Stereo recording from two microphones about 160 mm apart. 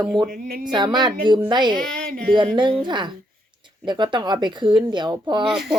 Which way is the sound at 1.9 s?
65° right (ahead or behind).